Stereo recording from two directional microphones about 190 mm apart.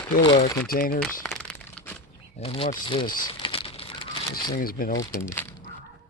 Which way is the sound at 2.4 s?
30° left (ahead or behind).